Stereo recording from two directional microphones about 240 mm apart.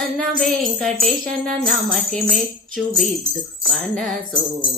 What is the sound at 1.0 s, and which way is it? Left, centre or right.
Jingle bell, centre.